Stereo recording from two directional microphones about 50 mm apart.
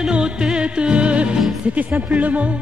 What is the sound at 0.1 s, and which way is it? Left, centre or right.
Music, centre.